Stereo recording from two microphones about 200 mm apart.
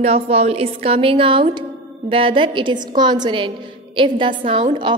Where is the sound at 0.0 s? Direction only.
30° right (ahead or behind).